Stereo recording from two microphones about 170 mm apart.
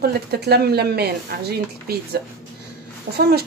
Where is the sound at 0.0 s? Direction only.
70° right (ahead or behind).